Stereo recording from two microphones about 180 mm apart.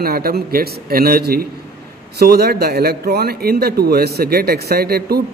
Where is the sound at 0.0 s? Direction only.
55° right (ahead or behind).